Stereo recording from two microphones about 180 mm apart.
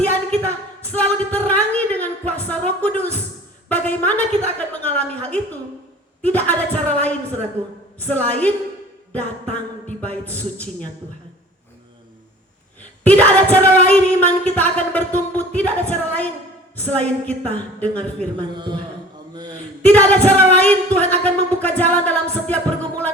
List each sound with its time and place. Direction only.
0.0 s a sound: 10° left (ahead or behind)
3.7 s singing: 10° left (ahead or behind)
13.1 s singing: 10° left (ahead or behind)
18.3 s a man's voice: 25° right (ahead or behind)
19.8 s singing: 10° left (ahead or behind)
20.6 s speech: 10° left (ahead or behind)